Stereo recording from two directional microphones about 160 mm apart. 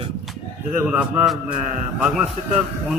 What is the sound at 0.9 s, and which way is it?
Speech, 5° right (ahead or behind).